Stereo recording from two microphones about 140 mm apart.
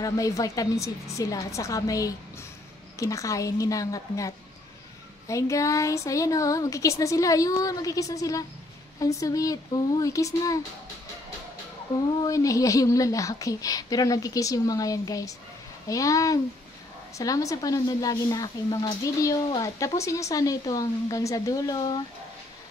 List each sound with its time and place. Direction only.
0.0 s a woman's voice: 25° left (ahead or behind)
5.3 s a woman's voice: 20° left (ahead or behind)
12.2 s a woman's voice: 25° left (ahead or behind)